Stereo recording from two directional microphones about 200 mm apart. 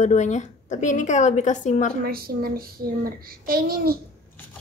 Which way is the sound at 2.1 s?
50° right (ahead or behind).